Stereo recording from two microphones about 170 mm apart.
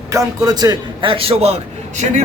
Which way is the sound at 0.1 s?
20° right (ahead or behind).